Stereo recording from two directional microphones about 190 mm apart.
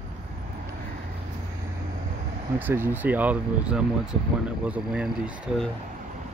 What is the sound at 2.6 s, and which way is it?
Speech, 10° right (ahead or behind).